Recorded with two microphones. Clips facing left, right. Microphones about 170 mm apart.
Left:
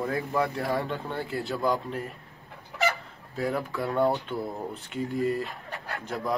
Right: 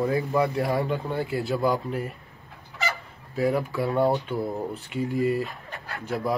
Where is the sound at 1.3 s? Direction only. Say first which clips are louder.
Right 2 dB; centre (ahead or behind).